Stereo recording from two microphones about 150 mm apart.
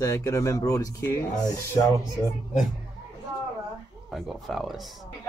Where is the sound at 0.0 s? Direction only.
20° left (ahead or behind).